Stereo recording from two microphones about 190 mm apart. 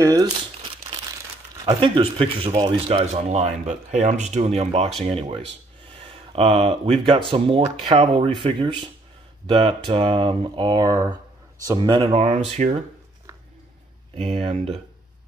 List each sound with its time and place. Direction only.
0.0 s speech: 15° right (ahead or behind)
1.7 s speech: 30° right (ahead or behind)
12.1 s speech: 35° right (ahead or behind)
14.1 s speech: 35° right (ahead or behind)